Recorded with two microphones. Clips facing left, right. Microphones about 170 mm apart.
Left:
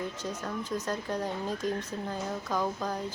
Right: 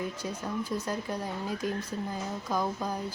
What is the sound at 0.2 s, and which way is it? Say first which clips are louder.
Speech: right 1 dB; 10° right (ahead or behind).